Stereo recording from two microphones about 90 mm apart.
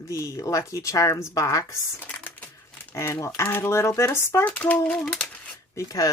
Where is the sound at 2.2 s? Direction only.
20° left (ahead or behind).